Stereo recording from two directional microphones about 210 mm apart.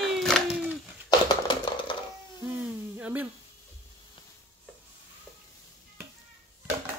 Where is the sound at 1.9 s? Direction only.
25° left (ahead or behind).